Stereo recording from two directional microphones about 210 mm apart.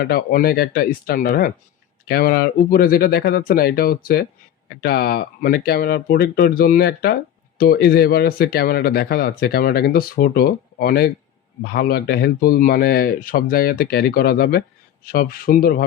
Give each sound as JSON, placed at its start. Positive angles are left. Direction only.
{"t": 0.0, "sound": "speech", "side_deg": 45}